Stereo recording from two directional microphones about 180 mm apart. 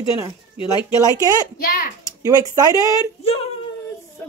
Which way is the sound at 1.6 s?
55° left (ahead or behind).